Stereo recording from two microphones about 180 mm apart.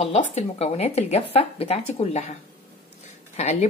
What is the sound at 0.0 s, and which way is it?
A woman's voice, 35° left (ahead or behind).